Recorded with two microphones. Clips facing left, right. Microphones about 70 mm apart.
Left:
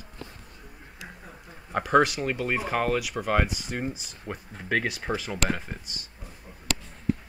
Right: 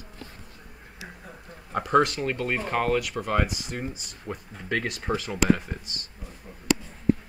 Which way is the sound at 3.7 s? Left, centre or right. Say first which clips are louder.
Left 2 dB; left.